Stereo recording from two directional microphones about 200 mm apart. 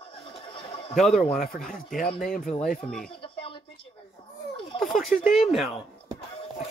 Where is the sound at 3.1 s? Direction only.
25° left (ahead or behind).